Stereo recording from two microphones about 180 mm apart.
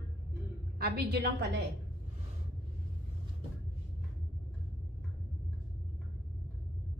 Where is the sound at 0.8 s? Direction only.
60° right (ahead or behind).